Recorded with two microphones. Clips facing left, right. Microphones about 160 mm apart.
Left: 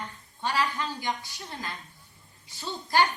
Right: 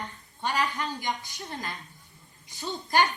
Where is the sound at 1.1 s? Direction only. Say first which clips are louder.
Even; 15° right (ahead or behind).